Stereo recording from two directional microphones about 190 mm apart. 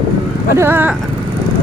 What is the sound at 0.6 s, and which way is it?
Speech, 10° right (ahead or behind).